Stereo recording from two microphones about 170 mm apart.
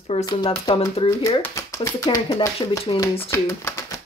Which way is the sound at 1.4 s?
20° left (ahead or behind).